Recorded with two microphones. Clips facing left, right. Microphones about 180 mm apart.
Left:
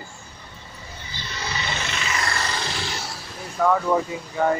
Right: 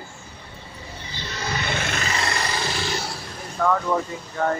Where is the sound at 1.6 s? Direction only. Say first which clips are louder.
Right 3 dB; 55° right (ahead or behind).